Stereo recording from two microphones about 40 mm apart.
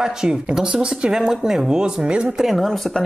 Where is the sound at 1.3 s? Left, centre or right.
Centre.